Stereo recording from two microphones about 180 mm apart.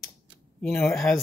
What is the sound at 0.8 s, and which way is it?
Speech, centre (ahead or behind).